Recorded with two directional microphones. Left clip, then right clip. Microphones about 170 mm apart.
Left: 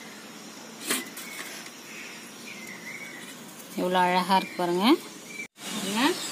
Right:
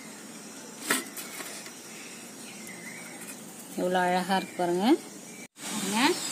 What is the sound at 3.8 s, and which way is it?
A woman's voice, 20° left (ahead or behind).